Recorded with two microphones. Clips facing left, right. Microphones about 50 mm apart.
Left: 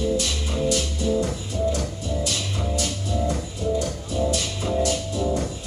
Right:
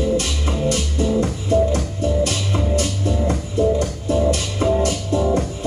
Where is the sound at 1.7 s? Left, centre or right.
Right.